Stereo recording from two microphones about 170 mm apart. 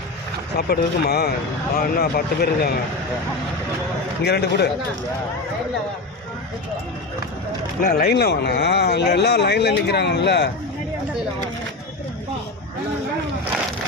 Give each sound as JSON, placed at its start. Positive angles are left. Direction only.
{"t": 0.5, "sound": "speech", "side_deg": 70}
{"t": 4.2, "sound": "speech", "side_deg": 70}
{"t": 7.8, "sound": "speech", "side_deg": 60}